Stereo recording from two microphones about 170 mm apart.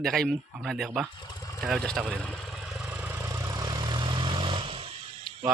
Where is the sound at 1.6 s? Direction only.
Centre (ahead or behind).